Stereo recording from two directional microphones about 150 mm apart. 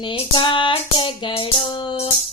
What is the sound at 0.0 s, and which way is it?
Music, 35° left (ahead or behind).